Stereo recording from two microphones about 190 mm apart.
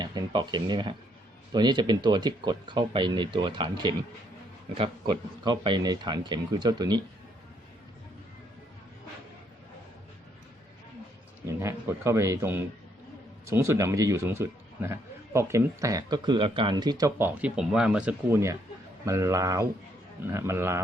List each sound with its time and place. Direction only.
0.0 s speech: 25° right (ahead or behind)
11.6 s a man's voice: 15° right (ahead or behind)